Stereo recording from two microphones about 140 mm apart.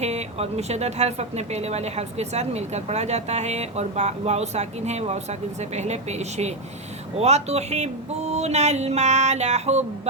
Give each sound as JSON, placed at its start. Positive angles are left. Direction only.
{"t": 0.0, "sound": "speech", "side_deg": -50}